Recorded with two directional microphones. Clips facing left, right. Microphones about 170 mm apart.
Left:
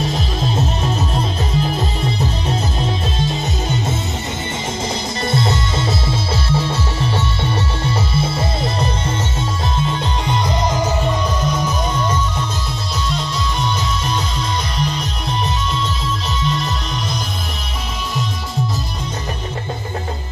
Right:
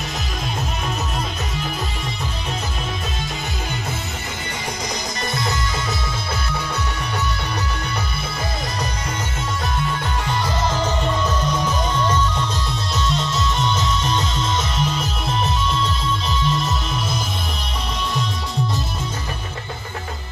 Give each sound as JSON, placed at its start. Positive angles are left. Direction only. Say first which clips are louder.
{"t": 0.0, "sound": "music", "louder": "left 7 dB", "side_deg": 30}
{"t": 5.3, "sound": "music", "louder": "left 6 dB", "side_deg": 30}